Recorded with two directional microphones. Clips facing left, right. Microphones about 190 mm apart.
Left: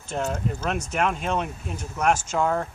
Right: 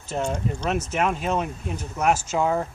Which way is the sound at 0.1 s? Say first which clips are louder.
Right 1 dB; 5° left (ahead or behind).